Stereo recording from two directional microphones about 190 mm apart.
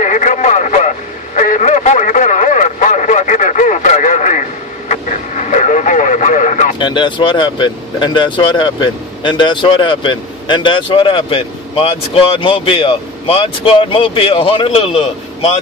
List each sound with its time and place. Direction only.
0.0 s radio: 40° left (ahead or behind)
6.8 s speech: 25° left (ahead or behind)